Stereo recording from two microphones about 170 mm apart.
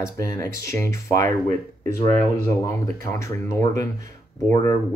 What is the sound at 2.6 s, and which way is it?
Speech, 20° left (ahead or behind).